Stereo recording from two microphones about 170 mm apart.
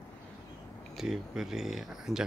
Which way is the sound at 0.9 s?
Centre (ahead or behind).